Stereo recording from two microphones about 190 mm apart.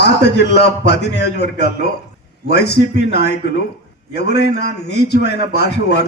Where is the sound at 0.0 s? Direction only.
65° left (ahead or behind).